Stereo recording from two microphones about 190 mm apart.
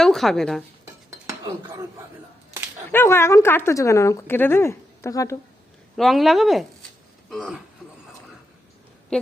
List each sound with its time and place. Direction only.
0.0 s speech: centre (ahead or behind)
2.9 s speech: 15° left (ahead or behind)
6.0 s speech: centre (ahead or behind)